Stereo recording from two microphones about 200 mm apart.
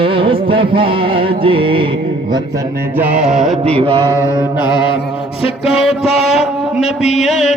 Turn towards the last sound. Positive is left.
turn(degrees=35)  # may be behind; listen again after turning